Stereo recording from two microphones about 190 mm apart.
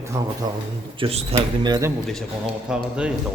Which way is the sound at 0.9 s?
30° right (ahead or behind).